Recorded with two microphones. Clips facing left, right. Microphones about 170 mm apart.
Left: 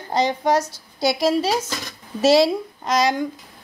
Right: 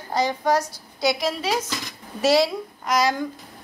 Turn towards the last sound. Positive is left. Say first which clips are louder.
# left 2 dB
turn(degrees=20)  # may be behind; listen again after turning